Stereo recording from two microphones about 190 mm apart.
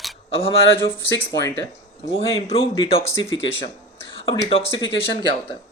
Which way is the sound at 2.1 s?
30° left (ahead or behind).